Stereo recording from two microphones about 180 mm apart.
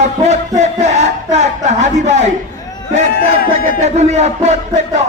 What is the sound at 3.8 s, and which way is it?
Speech, 40° right (ahead or behind).